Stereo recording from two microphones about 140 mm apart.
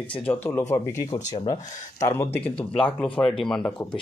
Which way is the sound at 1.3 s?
30° left (ahead or behind).